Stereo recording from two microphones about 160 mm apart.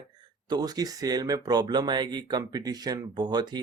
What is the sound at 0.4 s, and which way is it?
Speech, 25° right (ahead or behind).